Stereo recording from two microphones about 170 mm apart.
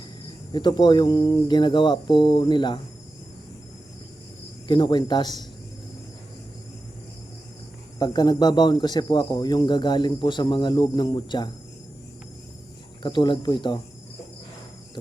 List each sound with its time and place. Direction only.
0.5 s speech: 25° left (ahead or behind)
4.7 s speech: 25° left (ahead or behind)
7.9 s speech: 25° left (ahead or behind)
13.0 s speech: 25° left (ahead or behind)